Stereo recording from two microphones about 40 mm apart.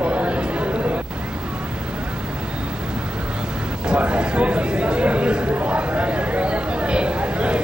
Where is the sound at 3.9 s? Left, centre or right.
Right.